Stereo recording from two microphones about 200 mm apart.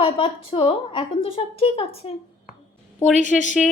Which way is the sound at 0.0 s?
25° left (ahead or behind).